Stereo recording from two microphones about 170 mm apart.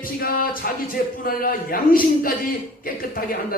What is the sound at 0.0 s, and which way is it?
A man's voice, 60° left (ahead or behind).